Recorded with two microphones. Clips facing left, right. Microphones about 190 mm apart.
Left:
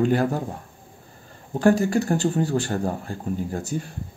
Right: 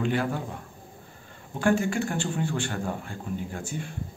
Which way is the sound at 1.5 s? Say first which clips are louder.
Left 5 dB; 40° left (ahead or behind).